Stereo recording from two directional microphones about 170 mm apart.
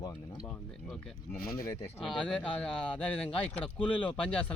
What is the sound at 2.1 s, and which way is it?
Speech, 5° left (ahead or behind).